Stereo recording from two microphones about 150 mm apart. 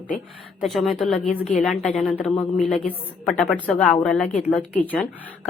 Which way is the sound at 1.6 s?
5° left (ahead or behind).